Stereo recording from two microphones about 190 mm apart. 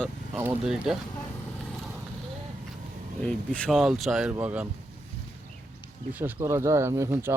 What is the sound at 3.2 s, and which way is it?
Speech, 5° left (ahead or behind).